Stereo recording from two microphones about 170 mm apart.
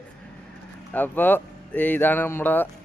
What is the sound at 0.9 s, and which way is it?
Speech, 10° left (ahead or behind).